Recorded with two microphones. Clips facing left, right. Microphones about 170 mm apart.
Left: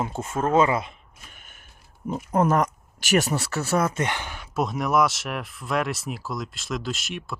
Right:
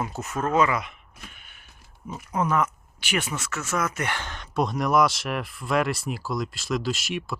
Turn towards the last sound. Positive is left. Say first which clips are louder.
# right 3 dB
turn(degrees=0)  # may be behind; listen again after turning